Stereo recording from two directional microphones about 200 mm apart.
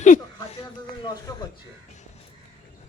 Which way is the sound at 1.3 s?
15° left (ahead or behind).